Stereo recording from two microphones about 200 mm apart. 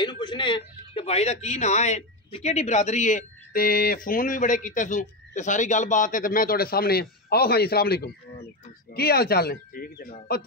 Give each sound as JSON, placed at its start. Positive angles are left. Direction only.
{"t": 0.0, "sound": "speech", "side_deg": 20}